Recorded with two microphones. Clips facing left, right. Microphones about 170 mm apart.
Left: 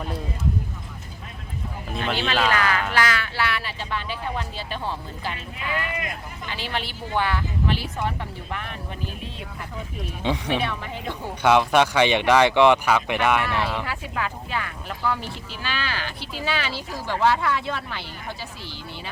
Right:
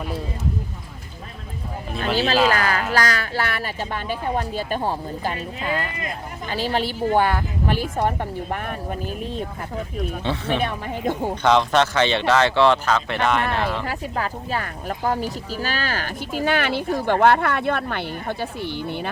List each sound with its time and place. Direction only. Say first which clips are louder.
2.1 s speech: right 5 dB; 35° right (ahead or behind)
10.2 s speech: left 1 dB; 15° left (ahead or behind)
10.6 s speech: right 4 dB; 45° right (ahead or behind)
11.4 s speech: even; 10° left (ahead or behind)
13.4 s speech: right 2 dB; 55° right (ahead or behind)
13.8 s speech: right 3 dB; 40° right (ahead or behind); by 19.1 s 55° right (ahead or behind)